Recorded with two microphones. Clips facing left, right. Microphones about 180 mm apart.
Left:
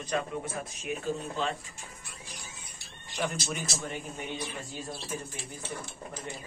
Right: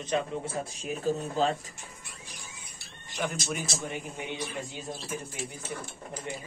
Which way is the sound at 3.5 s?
10° right (ahead or behind).